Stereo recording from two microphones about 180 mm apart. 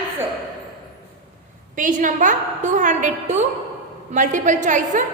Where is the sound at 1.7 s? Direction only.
45° right (ahead or behind).